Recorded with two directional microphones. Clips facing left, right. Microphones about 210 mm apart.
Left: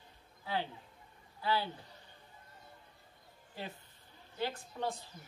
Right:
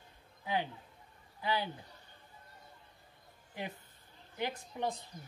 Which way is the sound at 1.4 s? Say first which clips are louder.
Left 1 dB; 15° right (ahead or behind).